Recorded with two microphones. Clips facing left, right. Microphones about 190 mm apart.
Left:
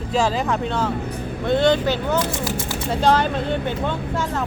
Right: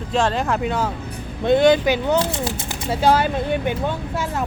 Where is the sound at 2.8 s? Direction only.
5° right (ahead or behind).